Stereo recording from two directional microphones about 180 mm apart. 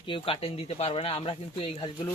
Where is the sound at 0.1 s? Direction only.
30° left (ahead or behind).